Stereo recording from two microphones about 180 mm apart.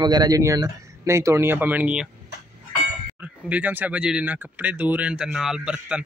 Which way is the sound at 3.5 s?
10° right (ahead or behind).